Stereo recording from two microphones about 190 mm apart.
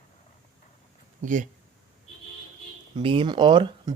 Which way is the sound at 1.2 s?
40° right (ahead or behind).